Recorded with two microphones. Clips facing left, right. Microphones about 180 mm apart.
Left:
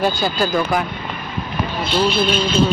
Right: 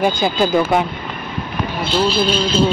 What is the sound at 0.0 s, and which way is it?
Speech, 20° right (ahead or behind).